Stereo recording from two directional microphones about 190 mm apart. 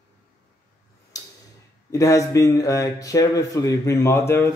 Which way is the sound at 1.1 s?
20° left (ahead or behind).